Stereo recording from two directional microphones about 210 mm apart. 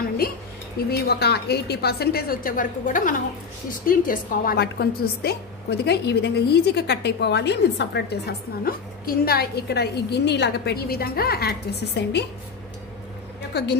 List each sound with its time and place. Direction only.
0.8 s a woman's voice: 50° left (ahead or behind)
13.5 s a woman's voice: 50° left (ahead or behind)